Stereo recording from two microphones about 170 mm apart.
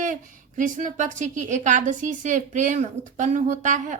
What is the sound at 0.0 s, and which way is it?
Speech, 50° right (ahead or behind).